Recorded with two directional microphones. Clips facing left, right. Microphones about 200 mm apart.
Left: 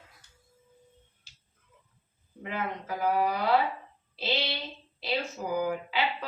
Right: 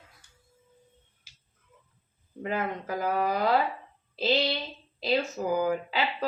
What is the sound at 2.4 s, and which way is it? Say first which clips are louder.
Speech: right 4 dB; 45° right (ahead or behind).